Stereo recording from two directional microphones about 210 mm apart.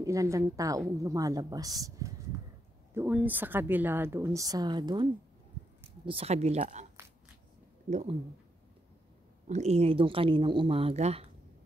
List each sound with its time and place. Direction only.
0.0 s a woman's voice: 15° right (ahead or behind)
6.0 s speech: 30° right (ahead or behind)
7.9 s speech: 35° right (ahead or behind)
9.5 s speech: 30° right (ahead or behind)